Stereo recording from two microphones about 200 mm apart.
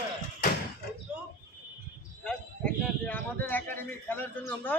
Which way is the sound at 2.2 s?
5° left (ahead or behind).